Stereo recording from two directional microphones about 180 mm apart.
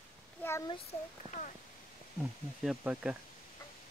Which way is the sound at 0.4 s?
15° left (ahead or behind).